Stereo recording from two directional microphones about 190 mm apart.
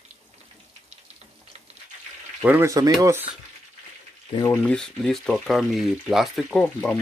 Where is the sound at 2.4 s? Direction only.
15° right (ahead or behind).